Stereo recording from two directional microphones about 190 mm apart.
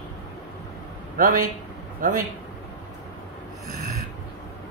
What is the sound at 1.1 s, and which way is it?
A man's voice, 45° right (ahead or behind).